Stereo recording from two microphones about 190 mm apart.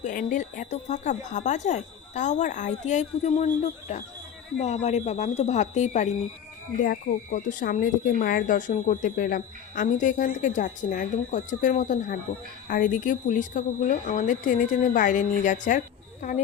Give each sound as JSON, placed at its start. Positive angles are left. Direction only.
{"t": 0.0, "sound": "speech", "side_deg": 45}